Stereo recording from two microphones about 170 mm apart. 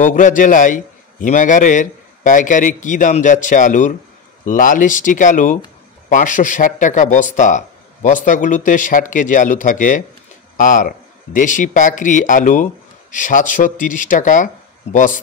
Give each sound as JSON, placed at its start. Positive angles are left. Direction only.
{"t": 0.0, "sound": "a man's voice", "side_deg": 50}